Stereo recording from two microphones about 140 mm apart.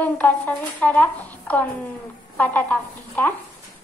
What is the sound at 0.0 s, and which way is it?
Speech, 10° left (ahead or behind).